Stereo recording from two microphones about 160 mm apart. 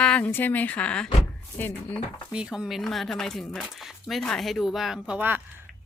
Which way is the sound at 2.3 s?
5° right (ahead or behind).